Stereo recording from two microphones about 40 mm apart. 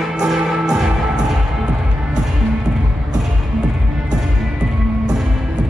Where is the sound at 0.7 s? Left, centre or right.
Centre.